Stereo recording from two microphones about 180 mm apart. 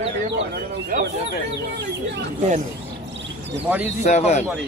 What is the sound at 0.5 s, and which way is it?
Speech, 60° right (ahead or behind).